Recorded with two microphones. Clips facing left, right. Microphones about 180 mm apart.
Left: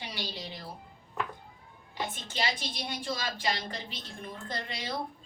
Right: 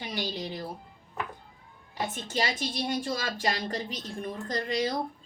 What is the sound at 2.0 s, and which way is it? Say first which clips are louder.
A woman's voice: right 4 dB; 45° right (ahead or behind).